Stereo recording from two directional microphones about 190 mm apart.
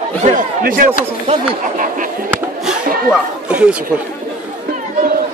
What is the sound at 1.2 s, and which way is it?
Speech, 40° right (ahead or behind).